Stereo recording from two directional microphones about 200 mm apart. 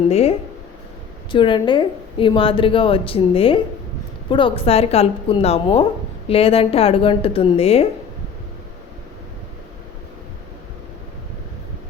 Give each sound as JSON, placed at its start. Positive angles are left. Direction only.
{"t": 0.1, "sound": "a woman's voice", "side_deg": 30}